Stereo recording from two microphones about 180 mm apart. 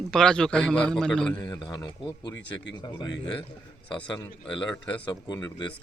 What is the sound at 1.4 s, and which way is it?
Speech, 20° left (ahead or behind).